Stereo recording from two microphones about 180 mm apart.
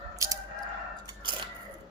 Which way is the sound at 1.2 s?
25° right (ahead or behind).